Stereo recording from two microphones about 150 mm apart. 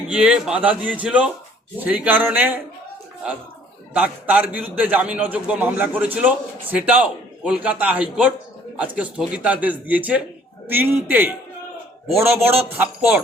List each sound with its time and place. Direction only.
0.1 s a man's voice: 5° right (ahead or behind)
3.9 s a man's voice: 10° right (ahead or behind)